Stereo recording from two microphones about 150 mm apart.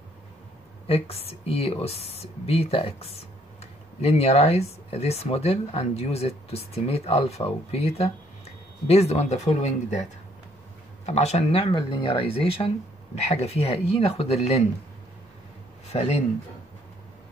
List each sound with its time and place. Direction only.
0.8 s speech: 40° left (ahead or behind)
11.1 s speech: 45° left (ahead or behind)
15.9 s speech: 40° left (ahead or behind)